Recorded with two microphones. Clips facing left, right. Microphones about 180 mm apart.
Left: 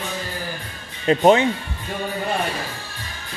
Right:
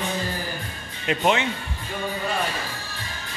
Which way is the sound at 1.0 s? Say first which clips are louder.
Left 7 dB; 35° left (ahead or behind).